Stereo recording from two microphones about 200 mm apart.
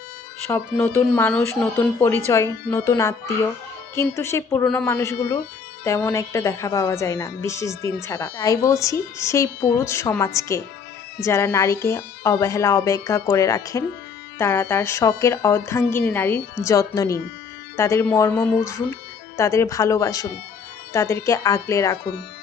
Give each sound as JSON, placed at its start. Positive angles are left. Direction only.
{"t": 0.5, "sound": "a woman's voice", "side_deg": 10}